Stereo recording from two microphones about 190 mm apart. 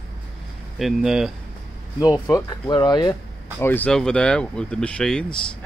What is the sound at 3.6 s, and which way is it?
Speech, 10° left (ahead or behind).